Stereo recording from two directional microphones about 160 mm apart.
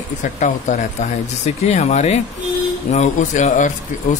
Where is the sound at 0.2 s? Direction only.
50° left (ahead or behind).